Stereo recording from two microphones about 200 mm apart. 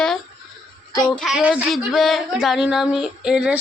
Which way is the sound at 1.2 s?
Centre (ahead or behind).